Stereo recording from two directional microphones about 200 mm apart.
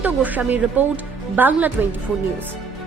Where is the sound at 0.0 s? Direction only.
10° right (ahead or behind).